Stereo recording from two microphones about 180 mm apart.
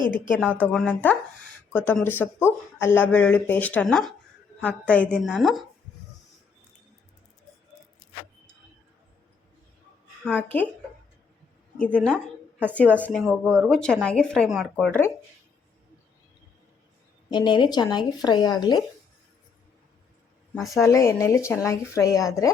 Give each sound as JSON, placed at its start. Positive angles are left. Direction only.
{"t": 0.1, "sound": "speech", "side_deg": 5}
{"t": 10.3, "sound": "speech", "side_deg": 10}
{"t": 11.8, "sound": "speech", "side_deg": 5}
{"t": 12.1, "sound": "a sound", "side_deg": -10}
{"t": 13.0, "sound": "speech", "side_deg": 0}
{"t": 17.2, "sound": "speech", "side_deg": 25}
{"t": 20.8, "sound": "speech", "side_deg": 15}